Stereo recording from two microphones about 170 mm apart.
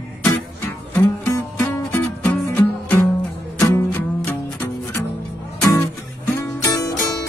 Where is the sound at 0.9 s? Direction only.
15° left (ahead or behind).